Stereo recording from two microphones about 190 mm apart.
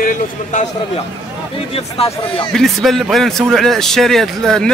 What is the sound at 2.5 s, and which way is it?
A man's voice, centre (ahead or behind).